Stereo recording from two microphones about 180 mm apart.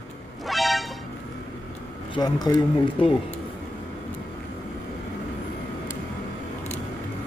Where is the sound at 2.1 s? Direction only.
20° left (ahead or behind).